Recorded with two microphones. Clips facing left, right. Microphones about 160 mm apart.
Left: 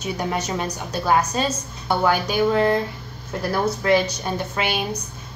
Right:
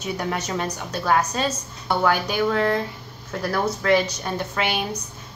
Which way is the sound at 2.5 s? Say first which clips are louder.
Left 4 dB; 15° left (ahead or behind).